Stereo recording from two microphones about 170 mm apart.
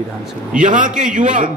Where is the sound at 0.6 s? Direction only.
50° right (ahead or behind).